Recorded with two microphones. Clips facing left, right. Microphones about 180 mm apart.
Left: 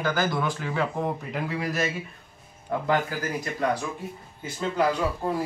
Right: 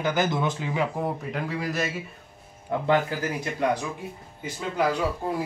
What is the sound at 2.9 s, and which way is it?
Speech, 25° right (ahead or behind).